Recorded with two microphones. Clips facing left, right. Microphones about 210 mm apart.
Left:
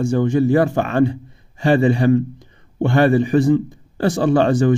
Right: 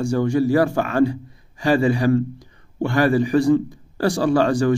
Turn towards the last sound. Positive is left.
turn(degrees=20)  # may be behind; listen again after turning